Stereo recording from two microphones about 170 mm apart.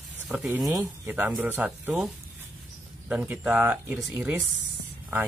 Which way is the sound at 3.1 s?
10° right (ahead or behind).